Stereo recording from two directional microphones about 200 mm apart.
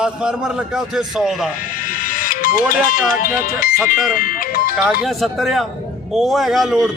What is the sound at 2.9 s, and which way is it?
Speech, 45° left (ahead or behind).